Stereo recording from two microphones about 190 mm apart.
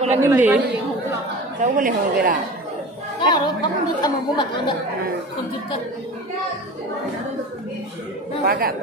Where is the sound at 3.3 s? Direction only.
25° left (ahead or behind).